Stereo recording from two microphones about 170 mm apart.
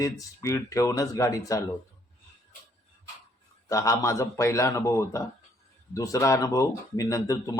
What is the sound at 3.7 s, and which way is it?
A man's voice, 20° left (ahead or behind).